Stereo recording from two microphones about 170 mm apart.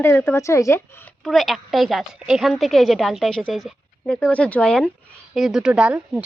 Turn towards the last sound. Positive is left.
turn(degrees=-5)  # may be behind; listen again after turning